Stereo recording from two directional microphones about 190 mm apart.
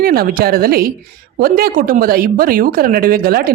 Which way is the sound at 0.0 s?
50° right (ahead or behind).